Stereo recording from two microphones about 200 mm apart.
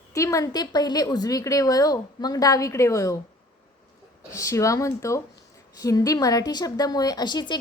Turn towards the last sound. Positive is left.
turn(degrees=20)  # may be behind; listen again after turning